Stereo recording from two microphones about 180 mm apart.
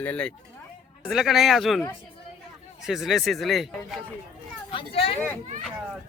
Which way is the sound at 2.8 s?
Centre (ahead or behind).